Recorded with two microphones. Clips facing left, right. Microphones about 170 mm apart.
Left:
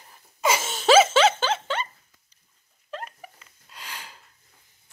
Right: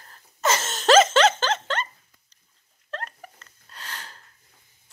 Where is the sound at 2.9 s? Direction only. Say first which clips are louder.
Even; 10° left (ahead or behind).